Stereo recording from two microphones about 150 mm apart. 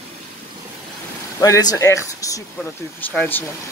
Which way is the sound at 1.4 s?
25° left (ahead or behind).